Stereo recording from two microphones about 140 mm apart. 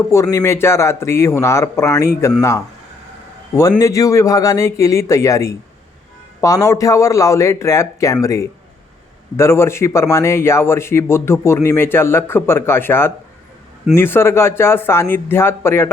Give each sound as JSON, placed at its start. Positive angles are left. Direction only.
{"t": 0.1, "sound": "a man's voice", "side_deg": 20}